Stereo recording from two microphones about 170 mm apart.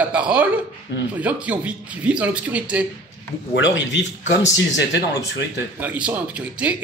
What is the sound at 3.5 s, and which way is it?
Speech, 90° left.